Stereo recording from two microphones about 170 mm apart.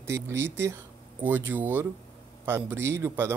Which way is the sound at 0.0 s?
15° right (ahead or behind).